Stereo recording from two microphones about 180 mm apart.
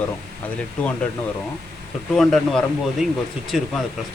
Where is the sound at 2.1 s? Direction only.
Centre (ahead or behind).